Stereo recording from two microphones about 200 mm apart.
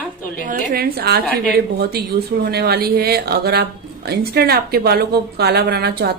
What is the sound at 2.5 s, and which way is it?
Speech, 55° right (ahead or behind).